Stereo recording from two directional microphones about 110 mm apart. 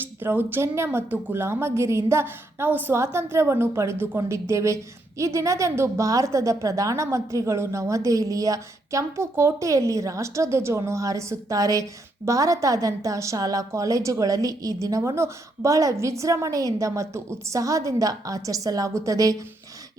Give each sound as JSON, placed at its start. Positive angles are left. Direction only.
{"t": 0.0, "sound": "a woman's voice", "side_deg": -20}